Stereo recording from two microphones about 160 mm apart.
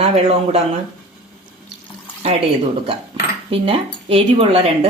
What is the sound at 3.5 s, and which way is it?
Speech, 35° right (ahead or behind).